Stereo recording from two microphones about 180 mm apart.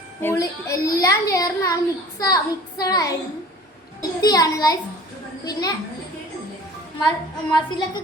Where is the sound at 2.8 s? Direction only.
20° left (ahead or behind).